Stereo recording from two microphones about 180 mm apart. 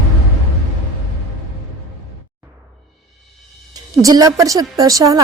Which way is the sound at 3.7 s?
20° right (ahead or behind).